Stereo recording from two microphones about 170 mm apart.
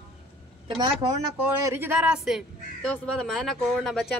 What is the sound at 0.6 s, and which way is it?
Speech, 30° right (ahead or behind).